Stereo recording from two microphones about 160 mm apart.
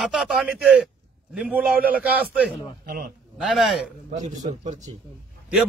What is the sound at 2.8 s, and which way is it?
Speech, 70° right (ahead or behind).